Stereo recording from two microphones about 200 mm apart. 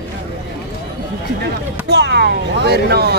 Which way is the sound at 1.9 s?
55° right (ahead or behind).